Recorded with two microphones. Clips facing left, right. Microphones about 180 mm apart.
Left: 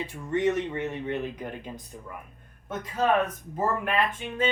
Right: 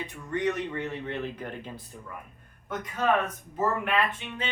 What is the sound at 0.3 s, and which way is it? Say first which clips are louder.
Speech: left 3 dB; 25° left (ahead or behind).